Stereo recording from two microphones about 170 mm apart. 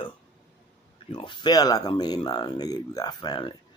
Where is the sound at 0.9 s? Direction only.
30° left (ahead or behind).